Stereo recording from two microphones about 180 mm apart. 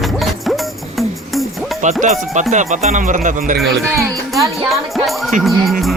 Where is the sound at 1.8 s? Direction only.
40° right (ahead or behind).